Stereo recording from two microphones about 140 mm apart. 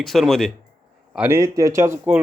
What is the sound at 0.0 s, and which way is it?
Speech, centre (ahead or behind).